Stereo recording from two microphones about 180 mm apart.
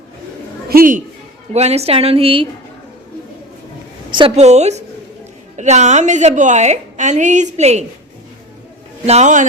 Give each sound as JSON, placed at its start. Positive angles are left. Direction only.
{"t": 0.7, "sound": "a woman's voice", "side_deg": -50}
{"t": 1.5, "sound": "a woman's voice", "side_deg": -35}
{"t": 4.1, "sound": "a woman's voice", "side_deg": -35}
{"t": 9.0, "sound": "a woman's voice", "side_deg": -40}